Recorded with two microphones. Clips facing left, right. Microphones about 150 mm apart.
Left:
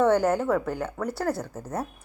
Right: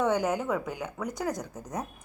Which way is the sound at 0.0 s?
10° right (ahead or behind).